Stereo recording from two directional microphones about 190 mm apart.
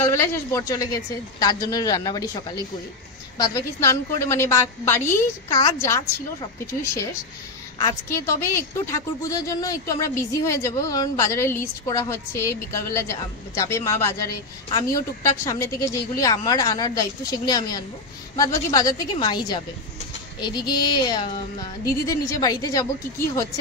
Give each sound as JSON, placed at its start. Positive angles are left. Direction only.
{"t": 0.0, "sound": "a woman's voice", "side_deg": 15}